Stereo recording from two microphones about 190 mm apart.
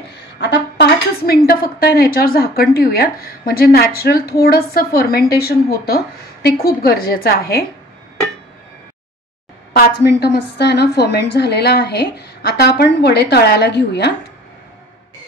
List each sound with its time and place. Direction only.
0.1 s a woman's voice: 65° left (ahead or behind)
9.8 s a woman's voice: 60° left (ahead or behind)